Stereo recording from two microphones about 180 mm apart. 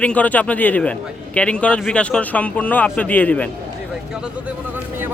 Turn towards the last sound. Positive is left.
turn(degrees=10)  # may be behind; listen again after turning